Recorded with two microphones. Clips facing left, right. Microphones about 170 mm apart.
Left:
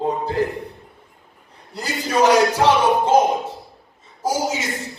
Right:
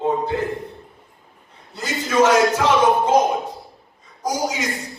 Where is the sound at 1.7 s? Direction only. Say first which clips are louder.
Right 2 dB; 35° left (ahead or behind).